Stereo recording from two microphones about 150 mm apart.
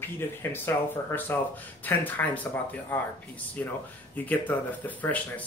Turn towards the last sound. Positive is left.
turn(degrees=10)  # may be behind; listen again after turning